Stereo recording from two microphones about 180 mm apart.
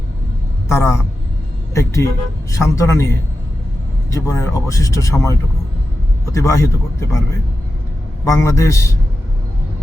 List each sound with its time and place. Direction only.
0.7 s a man's voice: 15° left (ahead or behind)
4.1 s speech: 15° left (ahead or behind)
8.2 s speech: 15° left (ahead or behind)